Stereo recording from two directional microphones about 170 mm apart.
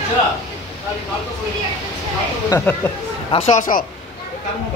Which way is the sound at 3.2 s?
35° left (ahead or behind).